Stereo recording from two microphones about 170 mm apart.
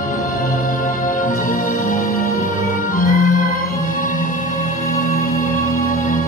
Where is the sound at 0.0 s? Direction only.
50° left (ahead or behind).